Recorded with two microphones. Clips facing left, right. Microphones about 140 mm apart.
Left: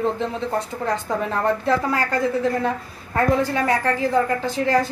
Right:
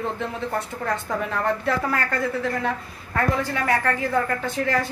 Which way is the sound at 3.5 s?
25° left (ahead or behind).